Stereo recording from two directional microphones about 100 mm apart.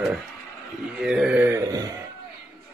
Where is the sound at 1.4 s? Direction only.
30° right (ahead or behind).